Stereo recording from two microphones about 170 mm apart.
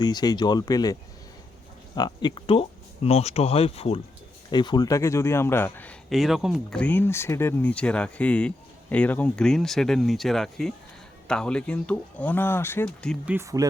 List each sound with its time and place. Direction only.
0.0 s speech: 25° left (ahead or behind)
2.0 s speech: 25° left (ahead or behind)
4.5 s a man's voice: 25° left (ahead or behind); by 13.1 s 5° left (ahead or behind)
13.2 s speech: 15° right (ahead or behind)